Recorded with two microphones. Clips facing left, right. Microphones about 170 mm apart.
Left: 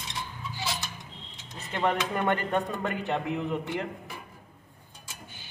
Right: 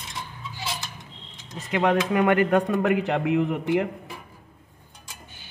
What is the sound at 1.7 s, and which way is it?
A man's voice, 90° right.